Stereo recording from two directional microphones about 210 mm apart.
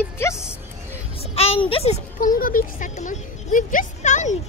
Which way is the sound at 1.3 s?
30° left (ahead or behind).